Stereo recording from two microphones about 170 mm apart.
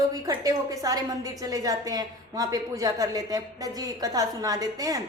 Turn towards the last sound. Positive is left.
turn(degrees=-20)  # may be behind; listen again after turning